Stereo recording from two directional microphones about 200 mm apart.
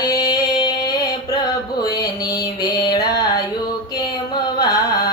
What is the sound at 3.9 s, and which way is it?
Carnatic music, 20° left (ahead or behind).